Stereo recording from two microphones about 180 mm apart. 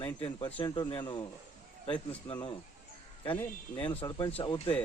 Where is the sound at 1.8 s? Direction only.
10° left (ahead or behind).